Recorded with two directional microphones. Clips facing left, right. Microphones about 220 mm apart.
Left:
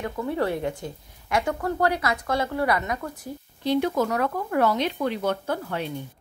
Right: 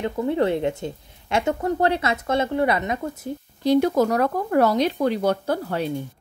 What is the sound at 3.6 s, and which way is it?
A woman's voice, 40° right (ahead or behind).